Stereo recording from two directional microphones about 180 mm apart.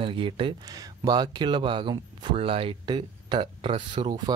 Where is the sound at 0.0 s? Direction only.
30° right (ahead or behind).